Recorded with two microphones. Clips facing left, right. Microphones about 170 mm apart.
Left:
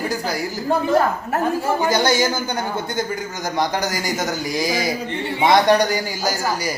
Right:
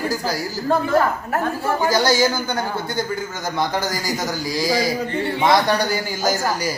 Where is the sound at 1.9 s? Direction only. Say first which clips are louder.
Right 3 dB; 20° left (ahead or behind).